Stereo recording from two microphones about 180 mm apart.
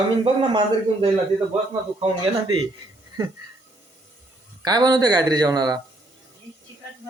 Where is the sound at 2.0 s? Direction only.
30° right (ahead or behind).